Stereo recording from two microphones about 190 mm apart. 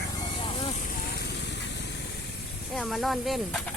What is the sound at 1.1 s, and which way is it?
Vehicle, 65° left (ahead or behind).